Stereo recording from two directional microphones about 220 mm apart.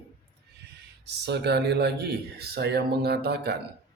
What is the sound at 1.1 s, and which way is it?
Speech, 50° right (ahead or behind).